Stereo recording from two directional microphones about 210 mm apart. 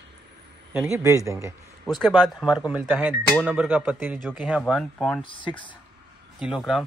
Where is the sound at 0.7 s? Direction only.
10° right (ahead or behind).